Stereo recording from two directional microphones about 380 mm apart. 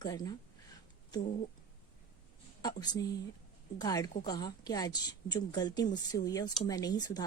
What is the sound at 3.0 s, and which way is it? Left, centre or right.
A woman's voice, centre.